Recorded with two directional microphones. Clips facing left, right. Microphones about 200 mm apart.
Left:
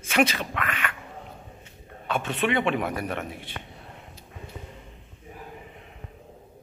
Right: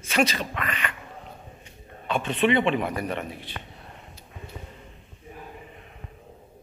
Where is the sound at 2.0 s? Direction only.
5° left (ahead or behind).